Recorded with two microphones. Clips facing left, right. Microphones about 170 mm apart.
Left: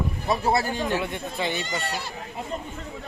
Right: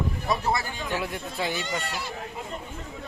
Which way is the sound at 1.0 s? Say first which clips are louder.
Left 2 dB; 5° right (ahead or behind).